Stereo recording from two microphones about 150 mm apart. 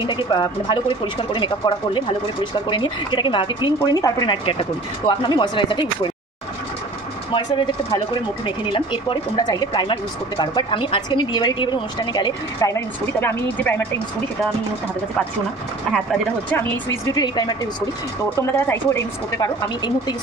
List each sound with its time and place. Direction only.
0.0 s speech: 30° left (ahead or behind)
7.3 s speech: 30° left (ahead or behind); by 14.0 s 10° left (ahead or behind)
16.5 s speech: 25° left (ahead or behind)